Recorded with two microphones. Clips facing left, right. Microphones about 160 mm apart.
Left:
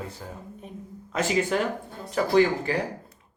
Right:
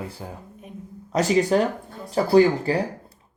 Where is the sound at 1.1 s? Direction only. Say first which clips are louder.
Right 5 dB; 40° right (ahead or behind).